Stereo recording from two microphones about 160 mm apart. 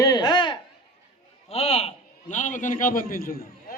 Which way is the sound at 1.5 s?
40° left (ahead or behind).